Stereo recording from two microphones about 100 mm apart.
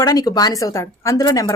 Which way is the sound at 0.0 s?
35° left (ahead or behind).